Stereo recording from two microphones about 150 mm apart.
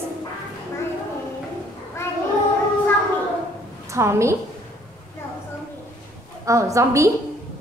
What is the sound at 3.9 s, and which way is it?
Speech, 20° right (ahead or behind).